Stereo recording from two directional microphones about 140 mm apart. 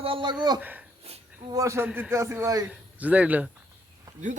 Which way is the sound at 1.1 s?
45° right (ahead or behind).